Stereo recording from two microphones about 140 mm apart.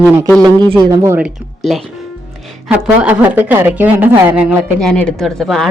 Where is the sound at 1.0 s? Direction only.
15° right (ahead or behind).